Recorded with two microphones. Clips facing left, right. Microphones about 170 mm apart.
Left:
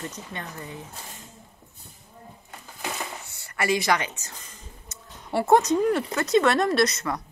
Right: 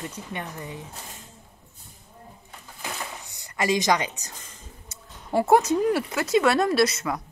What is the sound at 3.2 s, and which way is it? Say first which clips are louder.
Speech: right 3 dB; 15° right (ahead or behind).